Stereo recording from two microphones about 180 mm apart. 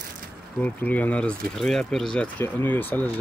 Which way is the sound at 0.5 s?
10° left (ahead or behind).